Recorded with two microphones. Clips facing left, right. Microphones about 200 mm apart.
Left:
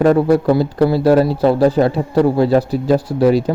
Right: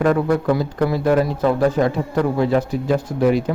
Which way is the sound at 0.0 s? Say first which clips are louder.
Left 5 dB; 30° left (ahead or behind).